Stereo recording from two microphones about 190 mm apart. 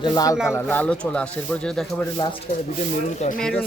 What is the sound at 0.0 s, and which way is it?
Speech, 20° left (ahead or behind).